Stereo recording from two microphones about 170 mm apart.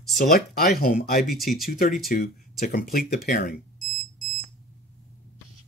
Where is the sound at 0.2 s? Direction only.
60° left (ahead or behind).